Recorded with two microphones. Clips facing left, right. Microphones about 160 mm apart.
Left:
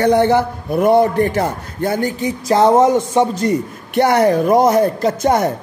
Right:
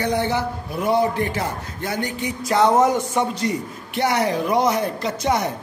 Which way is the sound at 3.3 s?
50° left (ahead or behind).